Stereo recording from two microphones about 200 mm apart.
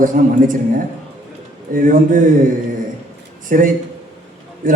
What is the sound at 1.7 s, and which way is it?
Speech, 40° right (ahead or behind).